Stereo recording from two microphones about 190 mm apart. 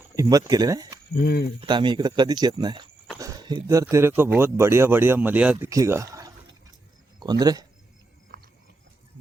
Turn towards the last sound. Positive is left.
turn(degrees=-20)  # may be behind; listen again after turning